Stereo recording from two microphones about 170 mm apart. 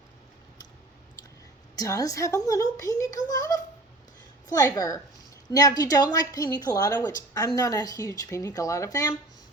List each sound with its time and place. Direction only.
1.7 s a woman's voice: 20° left (ahead or behind)